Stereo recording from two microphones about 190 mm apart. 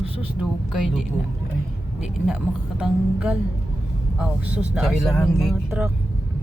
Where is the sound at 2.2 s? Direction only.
Centre (ahead or behind).